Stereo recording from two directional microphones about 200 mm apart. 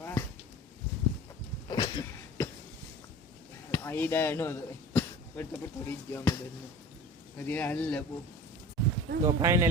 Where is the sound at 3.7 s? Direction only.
10° left (ahead or behind).